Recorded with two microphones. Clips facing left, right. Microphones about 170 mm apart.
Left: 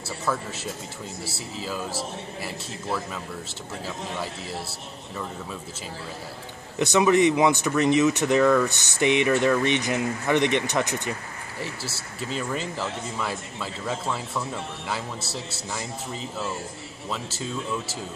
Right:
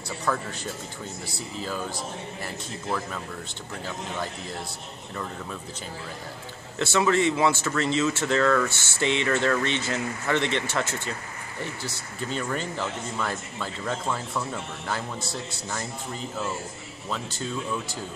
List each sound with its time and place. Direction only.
0.3 s speech: 5° left (ahead or behind)
6.8 s speech: 15° left (ahead or behind)
11.6 s speech: 5° left (ahead or behind)